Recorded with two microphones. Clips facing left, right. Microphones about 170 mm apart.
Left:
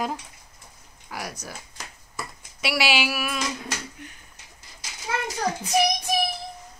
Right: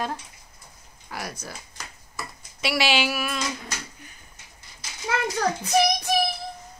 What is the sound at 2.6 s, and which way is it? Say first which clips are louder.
Speech: right 1 dB; 10° left (ahead or behind).